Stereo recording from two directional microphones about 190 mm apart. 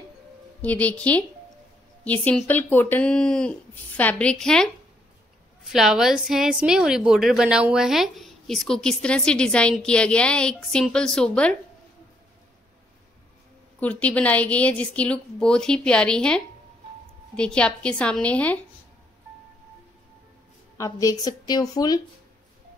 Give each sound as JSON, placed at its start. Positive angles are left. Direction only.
{"t": 0.6, "sound": "a woman's voice", "side_deg": 5}
{"t": 2.2, "sound": "a woman's voice", "side_deg": 10}
{"t": 5.7, "sound": "a woman's voice", "side_deg": 0}
{"t": 13.7, "sound": "a woman's voice", "side_deg": 5}
{"t": 20.7, "sound": "speech", "side_deg": 15}